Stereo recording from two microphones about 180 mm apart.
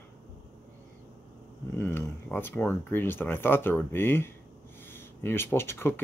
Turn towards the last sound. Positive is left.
turn(degrees=15)  # may be behind; listen again after turning